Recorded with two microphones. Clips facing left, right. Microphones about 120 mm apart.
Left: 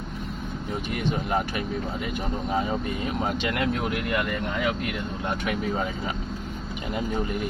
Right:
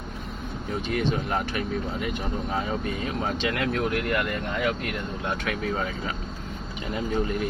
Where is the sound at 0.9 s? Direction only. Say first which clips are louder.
Right 1 dB; 10° left (ahead or behind).